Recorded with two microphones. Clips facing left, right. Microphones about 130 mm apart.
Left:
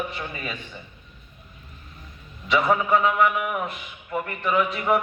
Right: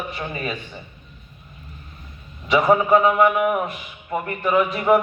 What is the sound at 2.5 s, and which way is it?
A man's voice, 15° right (ahead or behind).